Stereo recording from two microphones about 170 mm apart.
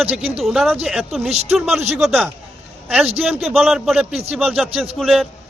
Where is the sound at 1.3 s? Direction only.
35° right (ahead or behind).